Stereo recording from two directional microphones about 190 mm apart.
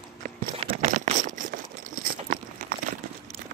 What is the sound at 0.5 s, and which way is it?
Crumpling, 30° right (ahead or behind).